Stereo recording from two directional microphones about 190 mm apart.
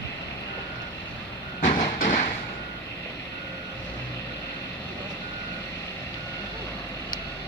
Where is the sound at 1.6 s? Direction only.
45° left (ahead or behind).